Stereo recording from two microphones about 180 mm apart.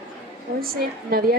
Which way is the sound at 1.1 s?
55° right (ahead or behind).